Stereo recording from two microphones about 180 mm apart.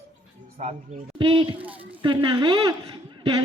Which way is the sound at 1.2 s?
30° right (ahead or behind).